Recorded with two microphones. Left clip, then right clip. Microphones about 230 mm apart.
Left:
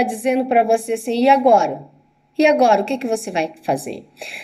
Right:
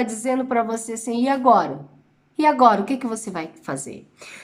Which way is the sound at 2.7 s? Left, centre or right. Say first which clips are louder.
Left 5 dB; centre.